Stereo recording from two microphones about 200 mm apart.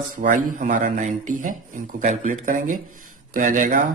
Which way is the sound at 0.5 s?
40° right (ahead or behind).